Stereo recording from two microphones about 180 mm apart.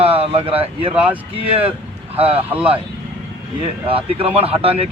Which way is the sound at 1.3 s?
30° right (ahead or behind).